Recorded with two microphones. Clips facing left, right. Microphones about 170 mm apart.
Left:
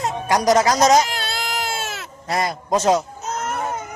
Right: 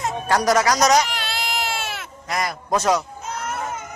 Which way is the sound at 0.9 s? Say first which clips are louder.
Left 2 dB; 45° left (ahead or behind).